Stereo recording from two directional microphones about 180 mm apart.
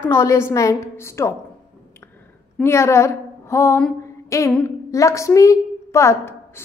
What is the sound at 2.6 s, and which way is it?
A woman's voice, 15° left (ahead or behind).